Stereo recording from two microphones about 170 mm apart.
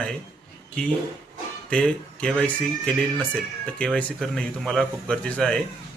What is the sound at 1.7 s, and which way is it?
Speech, 5° left (ahead or behind).